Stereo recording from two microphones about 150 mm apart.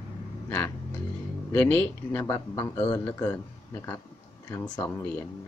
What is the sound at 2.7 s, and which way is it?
Speech, 35° left (ahead or behind).